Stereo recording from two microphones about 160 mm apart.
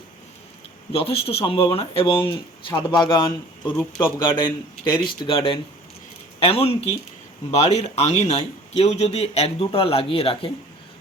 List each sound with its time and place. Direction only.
0.9 s speech: 35° left (ahead or behind)
3.8 s speech: 15° left (ahead or behind)
4.9 s speech: 30° left (ahead or behind)